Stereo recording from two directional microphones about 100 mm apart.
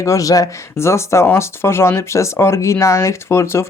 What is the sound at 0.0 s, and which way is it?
Speech, 35° left (ahead or behind).